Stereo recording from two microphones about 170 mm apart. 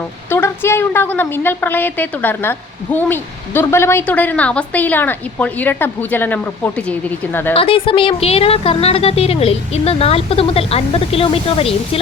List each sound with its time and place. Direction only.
0.3 s a woman's voice: 15° left (ahead or behind)
7.5 s a woman's voice: 30° left (ahead or behind)